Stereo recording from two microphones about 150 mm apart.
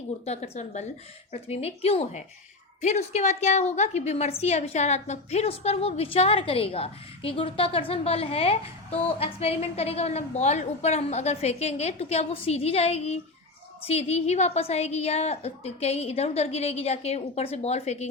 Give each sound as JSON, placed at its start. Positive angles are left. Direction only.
{"t": 0.3, "sound": "a woman's voice", "side_deg": 45}